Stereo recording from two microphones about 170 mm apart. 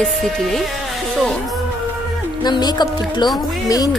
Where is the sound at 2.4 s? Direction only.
25° left (ahead or behind).